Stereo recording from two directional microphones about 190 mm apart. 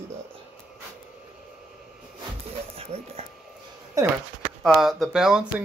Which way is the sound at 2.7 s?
30° right (ahead or behind).